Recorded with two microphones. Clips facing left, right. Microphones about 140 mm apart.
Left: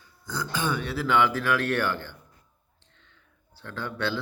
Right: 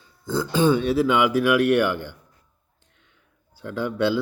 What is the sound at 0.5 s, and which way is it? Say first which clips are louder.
Speech: right 11 dB; 20° right (ahead or behind).